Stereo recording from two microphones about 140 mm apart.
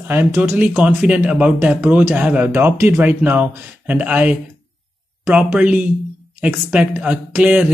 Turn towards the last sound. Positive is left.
turn(degrees=-10)  # may be behind; listen again after turning